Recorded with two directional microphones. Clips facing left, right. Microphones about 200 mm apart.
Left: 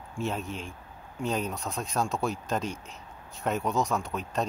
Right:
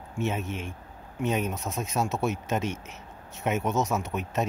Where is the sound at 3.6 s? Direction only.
20° right (ahead or behind).